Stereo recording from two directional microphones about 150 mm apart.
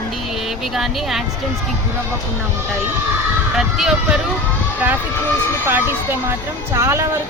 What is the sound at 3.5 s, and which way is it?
Speech, 5° right (ahead or behind).